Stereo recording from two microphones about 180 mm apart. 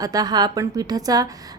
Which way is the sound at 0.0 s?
20° right (ahead or behind).